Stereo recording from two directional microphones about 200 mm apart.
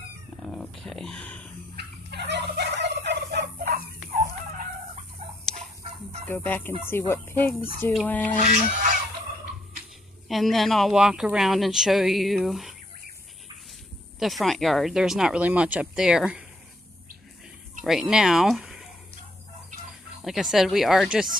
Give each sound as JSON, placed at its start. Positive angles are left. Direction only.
{"t": 0.5, "sound": "a sound", "side_deg": 0}
{"t": 1.8, "sound": "turkey", "side_deg": -55}
{"t": 4.1, "sound": "chicken", "side_deg": -40}
{"t": 5.2, "sound": "rodents", "side_deg": -30}
{"t": 6.2, "sound": "fowl", "side_deg": 10}
{"t": 6.9, "sound": "speech", "side_deg": 10}
{"t": 8.4, "sound": "fowl", "side_deg": -40}
{"t": 10.2, "sound": "speech", "side_deg": 0}
{"t": 14.2, "sound": "speech", "side_deg": 0}
{"t": 17.8, "sound": "speech", "side_deg": 0}
{"t": 20.2, "sound": "speech", "side_deg": 0}